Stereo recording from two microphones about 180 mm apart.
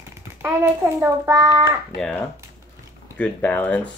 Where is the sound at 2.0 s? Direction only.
5° left (ahead or behind).